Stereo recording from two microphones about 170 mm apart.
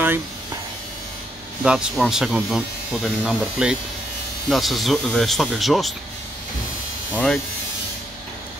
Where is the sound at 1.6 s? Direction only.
5° right (ahead or behind).